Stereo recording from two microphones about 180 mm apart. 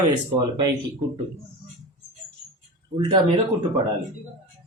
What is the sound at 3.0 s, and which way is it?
Speech, 25° right (ahead or behind).